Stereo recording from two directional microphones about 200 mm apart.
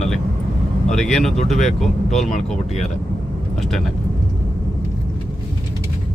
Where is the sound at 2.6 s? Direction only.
35° left (ahead or behind).